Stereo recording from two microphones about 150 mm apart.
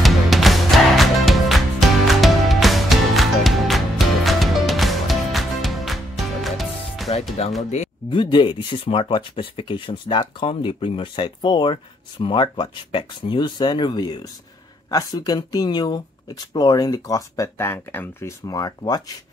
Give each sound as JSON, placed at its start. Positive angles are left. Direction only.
{"t": 0.0, "sound": "music", "side_deg": 0}
{"t": 8.1, "sound": "speech", "side_deg": 30}